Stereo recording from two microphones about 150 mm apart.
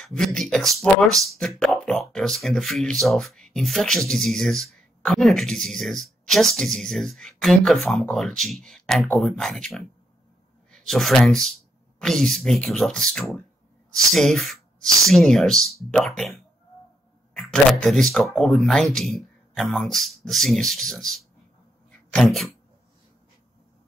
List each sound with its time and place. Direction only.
0.0 s speech: 5° left (ahead or behind)
17.3 s speech: 5° left (ahead or behind)